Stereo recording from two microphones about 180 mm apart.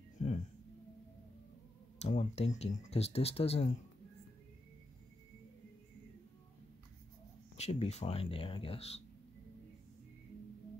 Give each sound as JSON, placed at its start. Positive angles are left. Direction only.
{"t": 0.2, "sound": "music", "side_deg": 40}
{"t": 2.0, "sound": "speech", "side_deg": 40}
{"t": 7.5, "sound": "speech", "side_deg": 35}